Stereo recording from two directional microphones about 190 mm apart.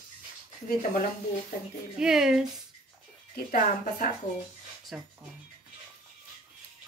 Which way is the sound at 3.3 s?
50° left (ahead or behind).